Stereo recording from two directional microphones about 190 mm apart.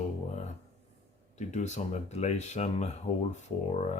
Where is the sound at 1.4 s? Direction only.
35° left (ahead or behind).